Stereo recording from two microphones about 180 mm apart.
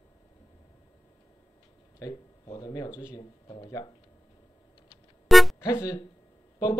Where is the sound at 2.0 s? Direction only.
20° left (ahead or behind).